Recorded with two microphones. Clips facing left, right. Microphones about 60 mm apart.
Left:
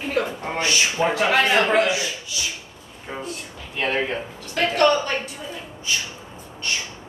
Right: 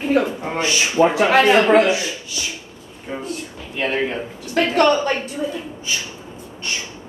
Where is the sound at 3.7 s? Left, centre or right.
Centre.